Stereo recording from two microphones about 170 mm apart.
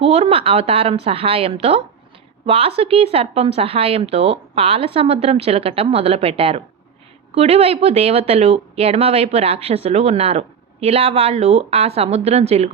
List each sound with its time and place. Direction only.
0.0 s speech: 35° right (ahead or behind)